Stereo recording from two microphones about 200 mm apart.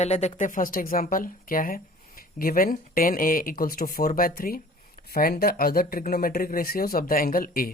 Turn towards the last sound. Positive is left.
turn(degrees=45)  # may be behind; listen again after turning